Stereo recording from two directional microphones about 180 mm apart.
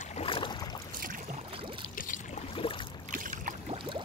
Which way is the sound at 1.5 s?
30° right (ahead or behind).